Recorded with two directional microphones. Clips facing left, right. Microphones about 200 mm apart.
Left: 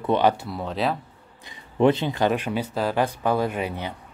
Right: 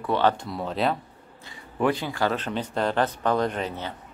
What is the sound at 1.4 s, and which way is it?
Speech, 20° left (ahead or behind).